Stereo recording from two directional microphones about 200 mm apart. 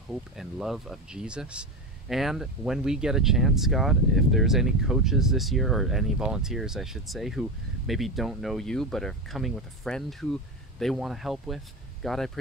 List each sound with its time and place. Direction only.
0.1 s speech: centre (ahead or behind)